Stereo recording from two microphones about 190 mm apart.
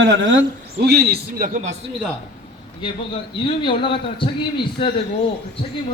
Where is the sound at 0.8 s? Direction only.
55° right (ahead or behind).